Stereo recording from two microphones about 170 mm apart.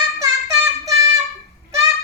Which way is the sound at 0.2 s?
20° right (ahead or behind).